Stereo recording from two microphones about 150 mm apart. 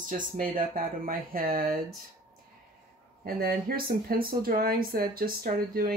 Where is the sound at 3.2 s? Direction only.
75° right (ahead or behind).